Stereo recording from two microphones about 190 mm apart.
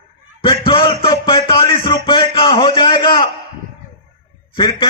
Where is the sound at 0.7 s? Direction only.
30° left (ahead or behind).